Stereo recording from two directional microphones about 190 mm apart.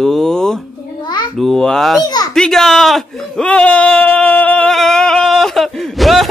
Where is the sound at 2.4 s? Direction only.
Centre (ahead or behind).